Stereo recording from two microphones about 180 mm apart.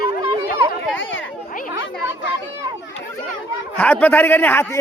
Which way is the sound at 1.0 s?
90° left.